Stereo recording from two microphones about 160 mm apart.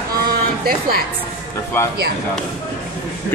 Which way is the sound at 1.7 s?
15° left (ahead or behind).